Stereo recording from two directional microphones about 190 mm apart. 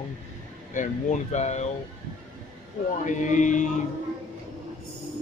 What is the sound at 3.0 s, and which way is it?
Speech, 40° left (ahead or behind).